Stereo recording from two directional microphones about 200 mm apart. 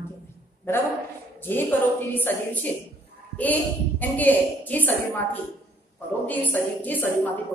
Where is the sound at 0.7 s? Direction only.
10° left (ahead or behind).